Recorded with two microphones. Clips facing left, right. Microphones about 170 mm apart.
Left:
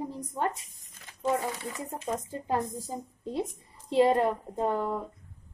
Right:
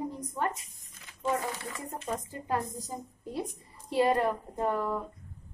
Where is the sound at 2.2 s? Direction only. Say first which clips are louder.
Left 2 dB; 25° left (ahead or behind).